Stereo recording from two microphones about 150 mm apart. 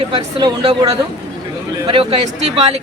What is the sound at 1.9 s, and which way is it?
Speech, 40° right (ahead or behind).